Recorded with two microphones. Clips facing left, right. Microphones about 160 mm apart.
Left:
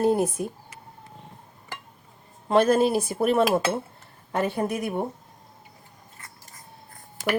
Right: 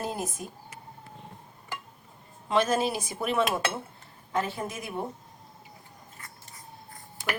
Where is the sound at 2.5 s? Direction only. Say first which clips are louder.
Left 6 dB; 55° left (ahead or behind).